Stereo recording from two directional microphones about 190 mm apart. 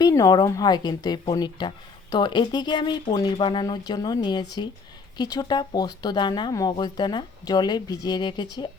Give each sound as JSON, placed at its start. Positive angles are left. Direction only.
{"t": 0.0, "sound": "a woman's voice", "side_deg": 15}